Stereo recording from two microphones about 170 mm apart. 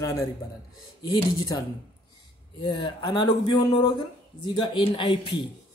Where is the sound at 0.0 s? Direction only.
20° left (ahead or behind).